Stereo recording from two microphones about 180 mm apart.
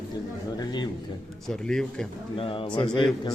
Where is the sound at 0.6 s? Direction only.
25° left (ahead or behind).